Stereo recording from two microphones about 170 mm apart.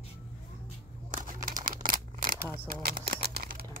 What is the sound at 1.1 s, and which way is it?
Crumpling, 55° right (ahead or behind).